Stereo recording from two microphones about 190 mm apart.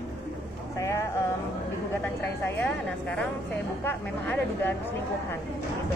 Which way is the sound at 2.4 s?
10° left (ahead or behind).